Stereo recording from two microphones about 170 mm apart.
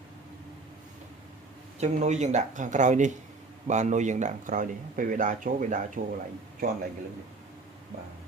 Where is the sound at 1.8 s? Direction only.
45° right (ahead or behind).